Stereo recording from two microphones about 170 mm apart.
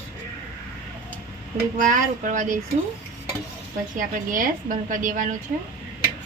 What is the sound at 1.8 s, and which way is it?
Speech, 50° right (ahead or behind).